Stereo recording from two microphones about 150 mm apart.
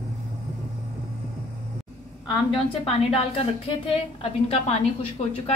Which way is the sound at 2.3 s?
40° left (ahead or behind).